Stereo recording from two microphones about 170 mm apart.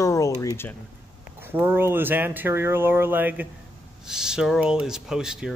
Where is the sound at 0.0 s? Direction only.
20° left (ahead or behind).